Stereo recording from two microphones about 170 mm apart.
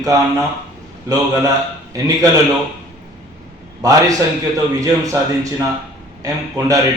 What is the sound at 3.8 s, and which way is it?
Speech, 20° right (ahead or behind).